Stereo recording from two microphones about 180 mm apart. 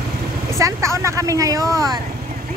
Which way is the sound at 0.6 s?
15° right (ahead or behind).